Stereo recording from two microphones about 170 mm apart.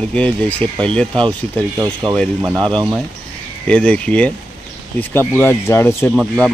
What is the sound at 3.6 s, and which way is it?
Speech, 5° left (ahead or behind).